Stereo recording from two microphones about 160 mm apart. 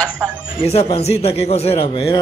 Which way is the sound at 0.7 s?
40° left (ahead or behind).